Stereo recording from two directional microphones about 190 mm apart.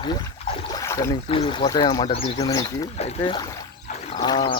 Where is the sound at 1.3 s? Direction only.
25° left (ahead or behind).